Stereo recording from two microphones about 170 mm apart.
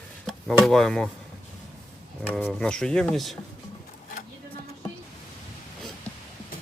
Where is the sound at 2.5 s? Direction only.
5° left (ahead or behind).